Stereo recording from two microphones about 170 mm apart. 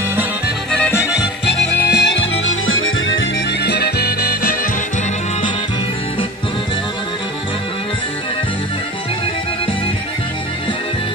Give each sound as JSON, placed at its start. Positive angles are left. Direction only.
{"t": 0.7, "sound": "music", "side_deg": 5}
{"t": 1.5, "sound": "music", "side_deg": 90}